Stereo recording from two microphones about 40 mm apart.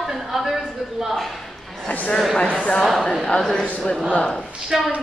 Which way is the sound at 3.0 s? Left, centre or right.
Centre.